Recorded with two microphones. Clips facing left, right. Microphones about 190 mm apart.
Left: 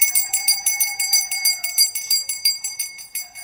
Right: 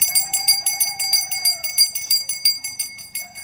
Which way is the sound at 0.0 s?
5° left (ahead or behind).